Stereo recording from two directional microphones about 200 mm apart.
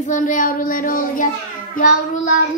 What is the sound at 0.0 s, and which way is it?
Child singing, 40° left (ahead or behind).